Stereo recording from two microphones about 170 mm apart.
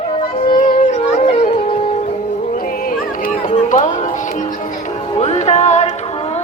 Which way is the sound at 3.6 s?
50° left (ahead or behind).